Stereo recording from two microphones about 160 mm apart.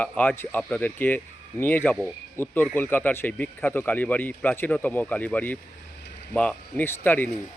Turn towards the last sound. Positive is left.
turn(degrees=10)  # may be behind; listen again after turning